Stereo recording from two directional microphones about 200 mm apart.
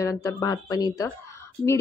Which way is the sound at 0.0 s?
15° left (ahead or behind).